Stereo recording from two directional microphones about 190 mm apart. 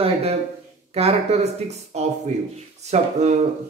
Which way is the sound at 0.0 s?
30° right (ahead or behind).